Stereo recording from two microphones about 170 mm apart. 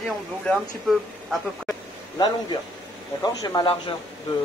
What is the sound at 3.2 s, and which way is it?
Speech, 20° left (ahead or behind).